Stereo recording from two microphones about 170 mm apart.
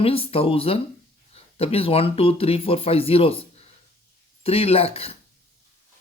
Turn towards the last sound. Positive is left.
turn(degrees=35)  # may be behind; listen again after turning